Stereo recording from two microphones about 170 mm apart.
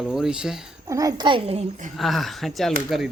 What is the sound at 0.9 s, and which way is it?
A child's voice, 20° right (ahead or behind).